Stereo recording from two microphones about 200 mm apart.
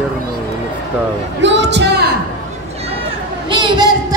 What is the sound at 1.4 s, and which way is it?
Speech, 60° right (ahead or behind).